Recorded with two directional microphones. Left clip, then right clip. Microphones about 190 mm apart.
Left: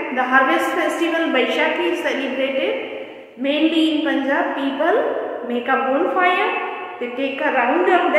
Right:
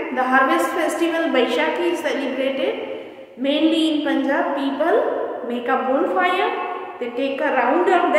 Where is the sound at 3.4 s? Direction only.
Centre (ahead or behind).